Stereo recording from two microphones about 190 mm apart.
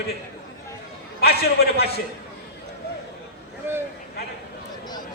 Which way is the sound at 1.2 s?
55° left (ahead or behind).